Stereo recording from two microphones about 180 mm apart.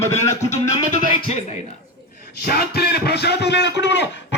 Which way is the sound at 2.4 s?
60° left (ahead or behind).